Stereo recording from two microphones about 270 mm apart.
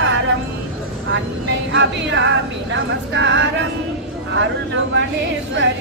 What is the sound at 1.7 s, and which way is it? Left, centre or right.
A woman's voice, right.